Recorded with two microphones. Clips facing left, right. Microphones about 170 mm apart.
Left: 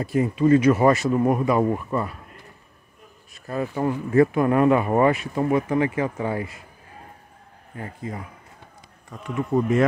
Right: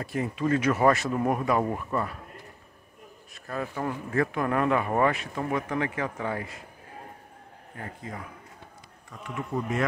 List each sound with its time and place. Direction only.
0.0 s speech: 5° left (ahead or behind)
3.4 s speech: 20° left (ahead or behind)
8.0 s speech: 5° left (ahead or behind)
9.1 s speech: 20° left (ahead or behind)